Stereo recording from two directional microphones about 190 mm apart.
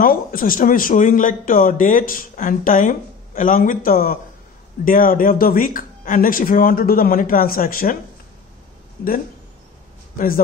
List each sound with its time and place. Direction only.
0.0 s speech: 45° left (ahead or behind)
10.1 s a man's voice: 50° left (ahead or behind)